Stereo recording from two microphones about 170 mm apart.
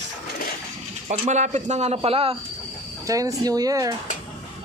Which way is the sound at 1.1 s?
45° right (ahead or behind).